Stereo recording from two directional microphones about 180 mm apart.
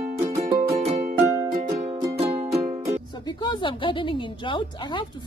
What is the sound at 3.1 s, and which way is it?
A woman's voice, 25° left (ahead or behind).